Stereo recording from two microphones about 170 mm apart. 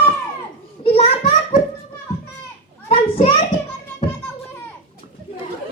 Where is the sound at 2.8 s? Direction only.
35° left (ahead or behind).